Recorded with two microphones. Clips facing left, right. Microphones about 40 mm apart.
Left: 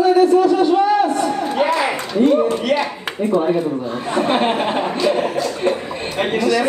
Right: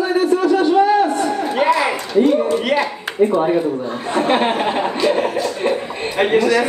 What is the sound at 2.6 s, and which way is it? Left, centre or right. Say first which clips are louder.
Chuckle: right 1 dB; centre.